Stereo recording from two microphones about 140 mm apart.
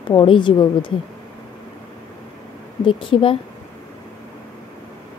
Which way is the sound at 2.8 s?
35° left (ahead or behind).